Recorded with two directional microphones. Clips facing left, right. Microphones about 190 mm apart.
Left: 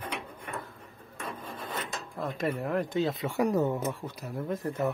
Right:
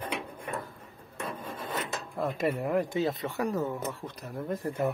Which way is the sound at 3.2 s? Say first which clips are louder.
Left 4 dB; 15° left (ahead or behind).